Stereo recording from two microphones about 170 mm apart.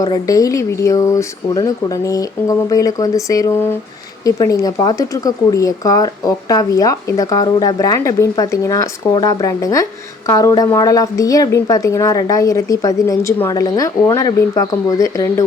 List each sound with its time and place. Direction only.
0.0 s speech: 20° left (ahead or behind)